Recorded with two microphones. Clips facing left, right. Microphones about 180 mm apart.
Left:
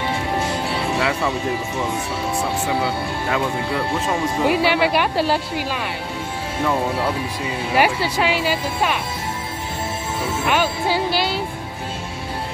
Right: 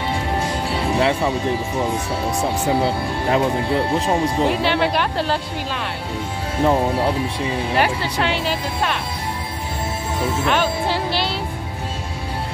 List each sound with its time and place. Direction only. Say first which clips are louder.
0.9 s speech: right 4 dB; 30° right (ahead or behind)
2.8 s speech: right 2 dB; 30° right (ahead or behind)
4.5 s speech: left 1 dB; 5° left (ahead or behind)
6.6 s speech: right 4 dB; 30° right (ahead or behind)
7.7 s speech: left 4 dB; 10° left (ahead or behind)
10.4 s speech: left 1 dB; 5° left (ahead or behind)